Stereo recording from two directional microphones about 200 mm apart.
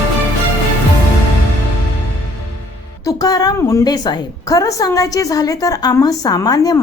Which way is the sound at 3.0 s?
15° left (ahead or behind).